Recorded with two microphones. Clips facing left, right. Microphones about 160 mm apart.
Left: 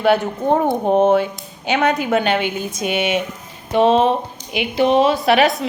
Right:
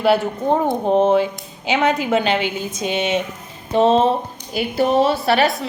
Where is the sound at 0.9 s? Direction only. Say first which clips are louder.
Left 1 dB; 5° left (ahead or behind).